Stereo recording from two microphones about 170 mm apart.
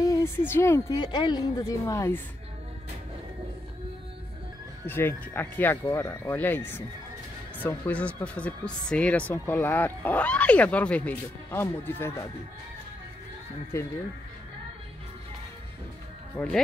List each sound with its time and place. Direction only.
0.0 s speech: 20° left (ahead or behind)
4.8 s speech: 10° left (ahead or behind)
13.7 s speech: 15° left (ahead or behind)
16.4 s speech: 5° left (ahead or behind)